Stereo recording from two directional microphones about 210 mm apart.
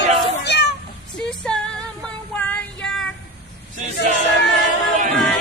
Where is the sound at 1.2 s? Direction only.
5° left (ahead or behind).